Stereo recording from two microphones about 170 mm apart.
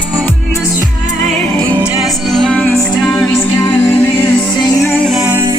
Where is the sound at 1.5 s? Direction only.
10° left (ahead or behind).